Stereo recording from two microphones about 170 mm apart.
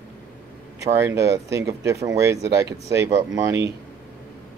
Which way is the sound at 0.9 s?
15° right (ahead or behind).